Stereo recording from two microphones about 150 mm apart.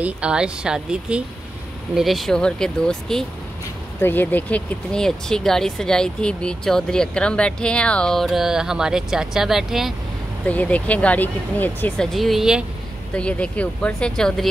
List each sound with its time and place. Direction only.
0.0 s speech: 5° right (ahead or behind)
10.4 s speech: 10° left (ahead or behind)
12.1 s speech: centre (ahead or behind)
13.1 s speech: 10° left (ahead or behind)